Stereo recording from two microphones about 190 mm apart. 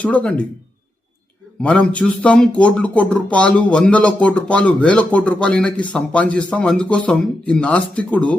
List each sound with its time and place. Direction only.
0.0 s speech: 5° left (ahead or behind)
1.6 s speech: 5° left (ahead or behind)